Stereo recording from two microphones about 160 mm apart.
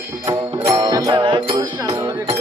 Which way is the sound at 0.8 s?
25° right (ahead or behind).